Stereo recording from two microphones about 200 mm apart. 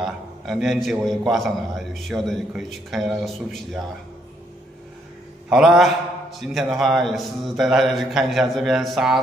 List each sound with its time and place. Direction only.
0.0 s a man's voice: centre (ahead or behind)
5.5 s a man's voice: centre (ahead or behind)